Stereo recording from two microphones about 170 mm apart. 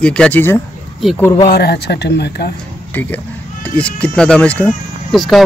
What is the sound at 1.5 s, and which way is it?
Speech, 70° left (ahead or behind).